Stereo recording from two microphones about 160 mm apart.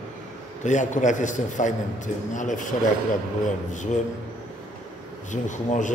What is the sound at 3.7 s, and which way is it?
Speech, 50° left (ahead or behind).